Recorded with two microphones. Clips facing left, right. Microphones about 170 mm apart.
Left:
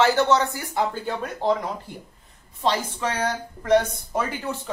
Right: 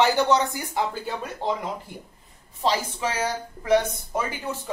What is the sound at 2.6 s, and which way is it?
Speech, 10° right (ahead or behind).